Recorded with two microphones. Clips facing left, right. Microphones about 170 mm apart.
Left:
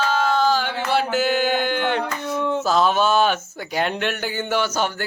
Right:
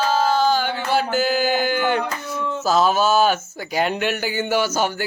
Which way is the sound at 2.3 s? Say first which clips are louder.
Left 4 dB; 60° left (ahead or behind).